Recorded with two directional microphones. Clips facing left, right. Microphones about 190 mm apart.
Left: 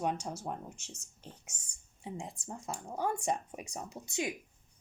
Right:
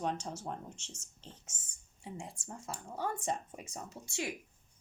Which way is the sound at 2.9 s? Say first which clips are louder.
Left 3 dB; 15° left (ahead or behind).